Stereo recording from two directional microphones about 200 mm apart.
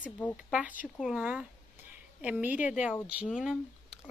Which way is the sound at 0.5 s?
5° right (ahead or behind).